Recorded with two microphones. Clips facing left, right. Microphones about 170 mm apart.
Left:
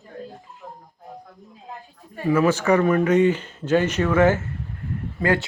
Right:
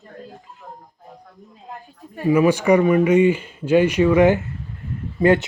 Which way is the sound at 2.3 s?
15° right (ahead or behind).